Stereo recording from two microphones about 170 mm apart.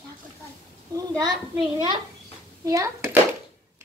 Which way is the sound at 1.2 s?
25° right (ahead or behind).